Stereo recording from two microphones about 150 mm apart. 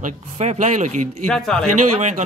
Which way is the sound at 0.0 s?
50° right (ahead or behind).